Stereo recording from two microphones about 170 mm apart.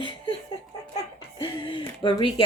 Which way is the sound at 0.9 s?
25° left (ahead or behind).